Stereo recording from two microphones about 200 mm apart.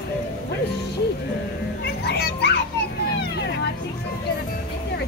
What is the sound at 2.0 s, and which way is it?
Children playing, 55° left (ahead or behind).